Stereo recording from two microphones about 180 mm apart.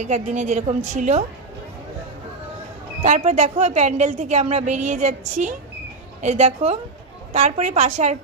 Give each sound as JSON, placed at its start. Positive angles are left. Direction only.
{"t": 0.0, "sound": "a woman's voice", "side_deg": -40}
{"t": 3.0, "sound": "a woman's voice", "side_deg": -40}